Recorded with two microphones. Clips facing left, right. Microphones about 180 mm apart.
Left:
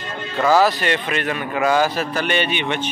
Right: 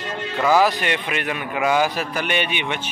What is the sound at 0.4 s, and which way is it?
A man's voice, 15° right (ahead or behind).